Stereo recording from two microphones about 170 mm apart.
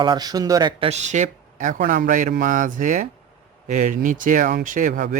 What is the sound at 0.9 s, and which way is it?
Speech, 45° right (ahead or behind).